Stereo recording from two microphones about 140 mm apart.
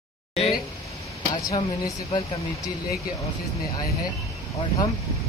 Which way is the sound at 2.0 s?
45° left (ahead or behind).